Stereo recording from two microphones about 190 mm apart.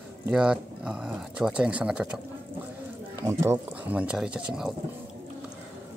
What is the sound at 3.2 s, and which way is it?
Speech, 15° right (ahead or behind).